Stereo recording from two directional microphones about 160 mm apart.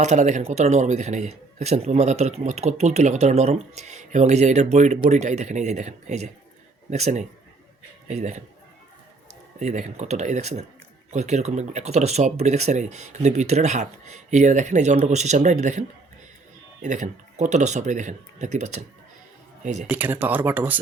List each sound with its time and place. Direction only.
0.0 s a man's voice: 45° right (ahead or behind)
9.6 s a man's voice: 45° right (ahead or behind)
16.8 s a man's voice: 50° right (ahead or behind)
19.9 s speech: 10° right (ahead or behind)